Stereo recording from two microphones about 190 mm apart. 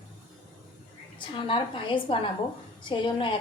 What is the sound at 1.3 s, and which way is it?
A woman's voice, 25° left (ahead or behind).